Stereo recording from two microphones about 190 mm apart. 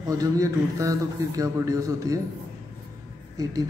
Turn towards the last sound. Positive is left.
turn(degrees=-20)  # may be behind; listen again after turning